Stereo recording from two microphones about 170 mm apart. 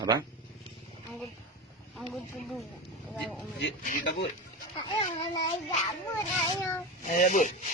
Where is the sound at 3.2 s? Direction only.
Centre (ahead or behind).